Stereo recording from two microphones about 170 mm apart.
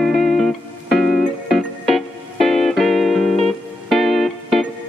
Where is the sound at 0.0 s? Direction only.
Centre (ahead or behind).